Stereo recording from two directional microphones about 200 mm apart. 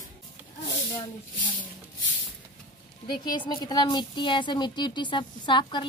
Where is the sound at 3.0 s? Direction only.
20° left (ahead or behind).